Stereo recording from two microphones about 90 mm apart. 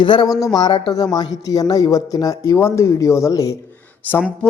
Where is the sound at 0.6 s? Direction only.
55° left (ahead or behind); by 3.5 s 40° left (ahead or behind).